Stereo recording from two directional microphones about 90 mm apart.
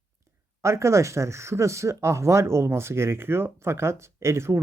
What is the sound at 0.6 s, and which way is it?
Speech, 35° right (ahead or behind).